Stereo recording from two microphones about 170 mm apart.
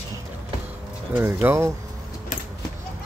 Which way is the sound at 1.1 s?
10° right (ahead or behind).